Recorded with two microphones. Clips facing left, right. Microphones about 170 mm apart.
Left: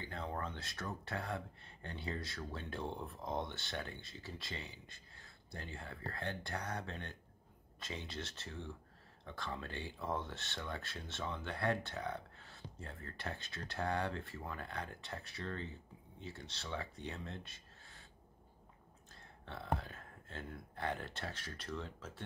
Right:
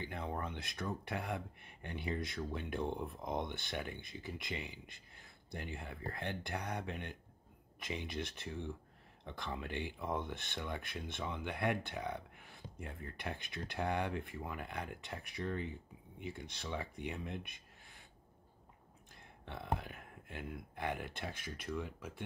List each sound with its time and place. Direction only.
0.0 s speech: 15° right (ahead or behind)
19.4 s speech: 15° right (ahead or behind)